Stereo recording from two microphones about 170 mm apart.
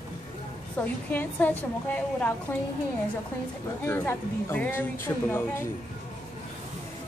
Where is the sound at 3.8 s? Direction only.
15° left (ahead or behind).